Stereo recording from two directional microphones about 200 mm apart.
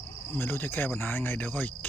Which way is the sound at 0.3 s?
10° left (ahead or behind).